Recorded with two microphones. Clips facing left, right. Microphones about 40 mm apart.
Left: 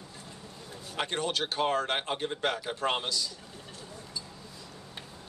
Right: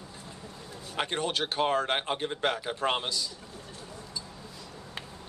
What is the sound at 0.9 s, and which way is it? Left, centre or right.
A woman's voice, right.